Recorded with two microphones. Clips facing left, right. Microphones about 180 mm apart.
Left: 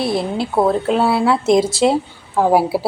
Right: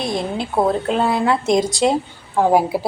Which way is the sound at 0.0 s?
5° left (ahead or behind).